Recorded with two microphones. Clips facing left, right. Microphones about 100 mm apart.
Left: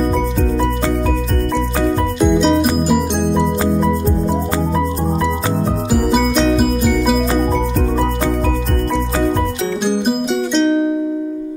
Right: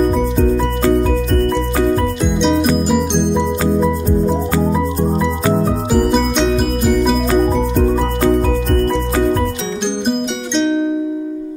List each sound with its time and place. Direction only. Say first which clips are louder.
2.1 s music: left 2 dB; centre (ahead or behind)
5.9 s music: even; 5° left (ahead or behind)
9.8 s music: left 1 dB; 5° left (ahead or behind)